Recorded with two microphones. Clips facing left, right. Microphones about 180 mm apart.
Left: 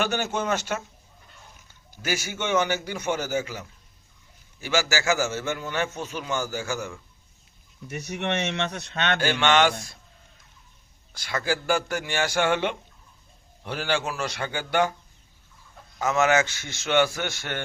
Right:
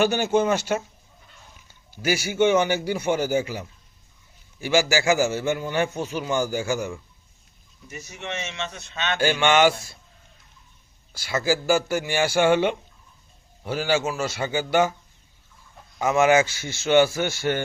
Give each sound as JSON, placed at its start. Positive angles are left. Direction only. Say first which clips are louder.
{"t": 0.0, "sound": "a man's voice", "louder": "right 6 dB", "side_deg": -10}
{"t": 2.0, "sound": "a man's voice", "louder": "right 8 dB", "side_deg": -10}
{"t": 7.9, "sound": "speech", "louder": "left 6 dB", "side_deg": 70}
{"t": 9.1, "sound": "a man's voice", "louder": "right 3 dB", "side_deg": -10}
{"t": 11.1, "sound": "a man's voice", "louder": "right 4 dB", "side_deg": -5}
{"t": 16.0, "sound": "a man's voice", "louder": "right 3 dB", "side_deg": -10}